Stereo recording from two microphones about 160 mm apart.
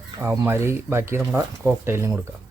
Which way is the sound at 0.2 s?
15° right (ahead or behind).